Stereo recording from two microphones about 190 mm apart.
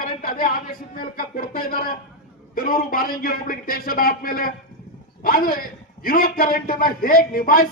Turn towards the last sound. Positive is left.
turn(degrees=50)  # may be behind; listen again after turning